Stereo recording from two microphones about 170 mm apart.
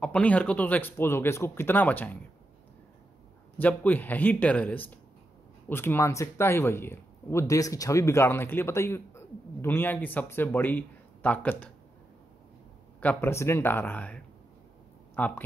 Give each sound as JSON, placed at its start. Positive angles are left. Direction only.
{"t": 0.0, "sound": "speech", "side_deg": 10}
{"t": 3.5, "sound": "speech", "side_deg": 10}
{"t": 13.0, "sound": "speech", "side_deg": 10}